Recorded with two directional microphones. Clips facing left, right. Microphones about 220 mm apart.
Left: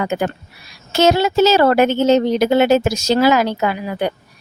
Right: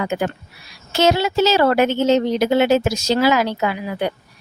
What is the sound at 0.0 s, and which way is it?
A woman's voice, 45° left (ahead or behind).